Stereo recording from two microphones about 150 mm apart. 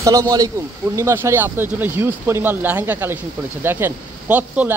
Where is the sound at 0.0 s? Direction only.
25° right (ahead or behind).